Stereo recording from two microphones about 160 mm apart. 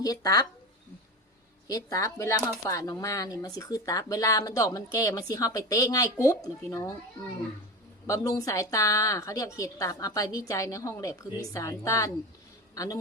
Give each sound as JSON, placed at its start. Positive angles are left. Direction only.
{"t": 0.0, "sound": "speech", "side_deg": 25}
{"t": 1.6, "sound": "speech", "side_deg": 20}
{"t": 8.0, "sound": "a man's voice", "side_deg": 20}